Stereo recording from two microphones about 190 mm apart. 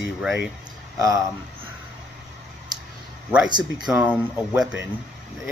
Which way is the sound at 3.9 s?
5° right (ahead or behind).